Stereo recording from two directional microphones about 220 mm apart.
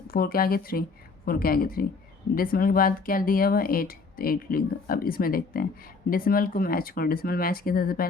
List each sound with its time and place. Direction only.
0.1 s speech: 40° left (ahead or behind)